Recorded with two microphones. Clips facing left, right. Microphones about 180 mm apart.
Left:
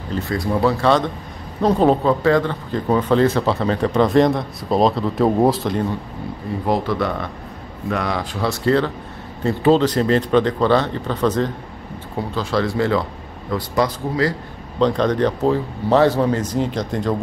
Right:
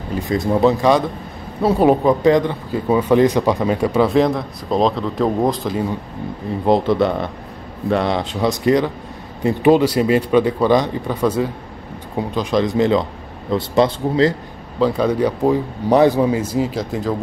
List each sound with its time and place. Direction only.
0.1 s speech: 15° right (ahead or behind); by 5.9 s centre (ahead or behind)
6.6 s speech: 25° right (ahead or behind)
14.8 s speech: 5° right (ahead or behind)